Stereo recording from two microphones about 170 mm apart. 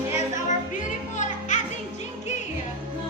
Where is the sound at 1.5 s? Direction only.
45° left (ahead or behind).